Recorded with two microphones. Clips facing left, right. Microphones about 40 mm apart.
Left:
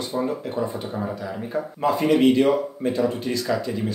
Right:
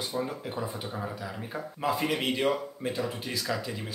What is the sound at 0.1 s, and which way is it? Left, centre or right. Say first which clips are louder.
Speech: left 7 dB; centre.